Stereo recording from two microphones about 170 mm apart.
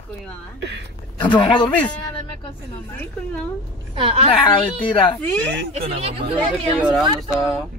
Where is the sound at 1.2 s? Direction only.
25° left (ahead or behind).